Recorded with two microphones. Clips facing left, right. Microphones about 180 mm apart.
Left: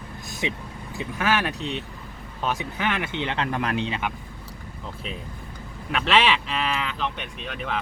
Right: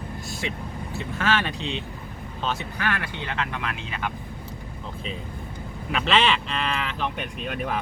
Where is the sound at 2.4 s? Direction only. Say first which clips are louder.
Left 2 dB; 15° left (ahead or behind).